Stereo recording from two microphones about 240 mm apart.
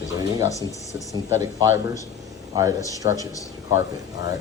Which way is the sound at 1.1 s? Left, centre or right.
Centre.